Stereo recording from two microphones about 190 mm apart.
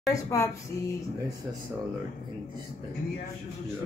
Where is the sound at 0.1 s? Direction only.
15° left (ahead or behind).